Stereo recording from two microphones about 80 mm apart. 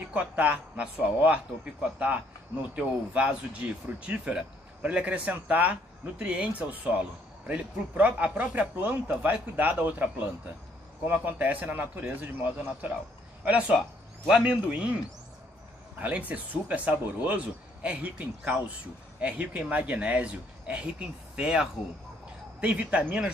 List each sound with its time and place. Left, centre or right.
0.1 s speech: centre
16.0 s speech: centre